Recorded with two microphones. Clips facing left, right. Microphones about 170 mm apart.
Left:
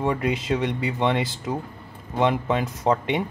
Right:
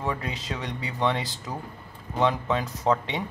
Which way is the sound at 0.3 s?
55° left (ahead or behind).